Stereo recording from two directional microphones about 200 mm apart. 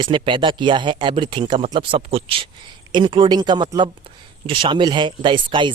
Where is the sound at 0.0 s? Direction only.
25° right (ahead or behind).